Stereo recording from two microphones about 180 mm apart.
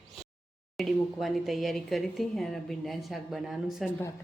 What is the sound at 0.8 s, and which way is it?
Speech, centre (ahead or behind).